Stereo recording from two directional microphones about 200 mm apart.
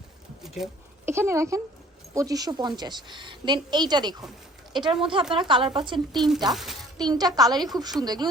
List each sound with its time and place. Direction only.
0.4 s a sound: centre (ahead or behind)
1.0 s a woman's voice: 10° right (ahead or behind)
6.1 s speech: centre (ahead or behind)
7.0 s a woman's voice: 20° right (ahead or behind)